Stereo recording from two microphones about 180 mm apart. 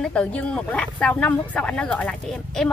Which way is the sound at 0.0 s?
5° left (ahead or behind).